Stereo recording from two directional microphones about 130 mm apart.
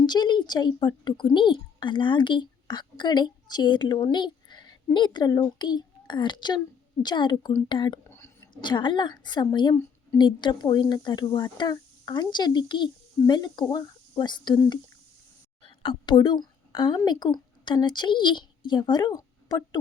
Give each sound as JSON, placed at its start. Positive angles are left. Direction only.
{"t": 0.0, "sound": "a woman's voice", "side_deg": 35}
{"t": 8.0, "sound": "a sound", "side_deg": 20}
{"t": 8.6, "sound": "speech", "side_deg": 35}
{"t": 15.6, "sound": "a woman's voice", "side_deg": 40}